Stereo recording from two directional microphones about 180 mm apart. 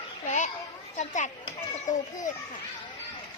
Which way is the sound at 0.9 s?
45° left (ahead or behind).